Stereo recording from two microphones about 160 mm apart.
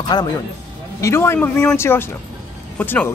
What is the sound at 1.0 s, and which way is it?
Speech, 15° left (ahead or behind).